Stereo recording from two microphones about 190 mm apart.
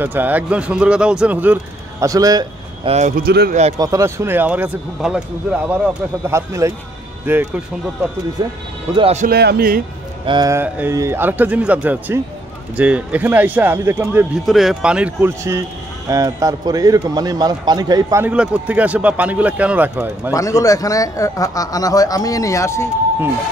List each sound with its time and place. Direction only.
0.0 s speech: 10° right (ahead or behind)
2.9 s a man's voice: 40° right (ahead or behind)
3.7 s speech: 20° right (ahead or behind)
6.2 s speech: 15° right (ahead or behind)
8.9 s speech: 35° right (ahead or behind)
9.3 s a man's voice: 55° right (ahead or behind)
10.2 s speech: 20° right (ahead or behind)
14.4 s a man's voice: centre (ahead or behind); by 18.2 s 20° right (ahead or behind)
18.2 s speech: 5° right (ahead or behind)
20.3 s speech: 15° left (ahead or behind)